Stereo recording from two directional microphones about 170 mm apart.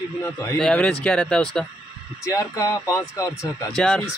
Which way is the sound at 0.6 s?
5° left (ahead or behind).